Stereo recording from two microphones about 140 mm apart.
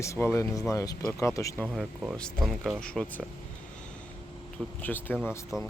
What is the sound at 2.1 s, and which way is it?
Speech, 5° left (ahead or behind).